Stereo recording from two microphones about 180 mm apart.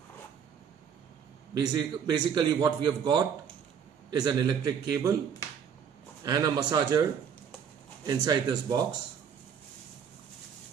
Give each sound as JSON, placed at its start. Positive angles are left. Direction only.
{"t": 1.5, "sound": "a man's voice", "side_deg": -20}
{"t": 6.2, "sound": "a man's voice", "side_deg": -20}